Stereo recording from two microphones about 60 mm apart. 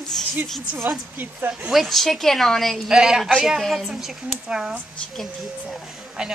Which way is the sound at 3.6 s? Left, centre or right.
Centre.